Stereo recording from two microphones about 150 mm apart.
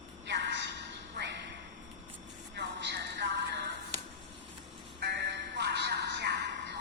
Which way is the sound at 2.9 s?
90° right.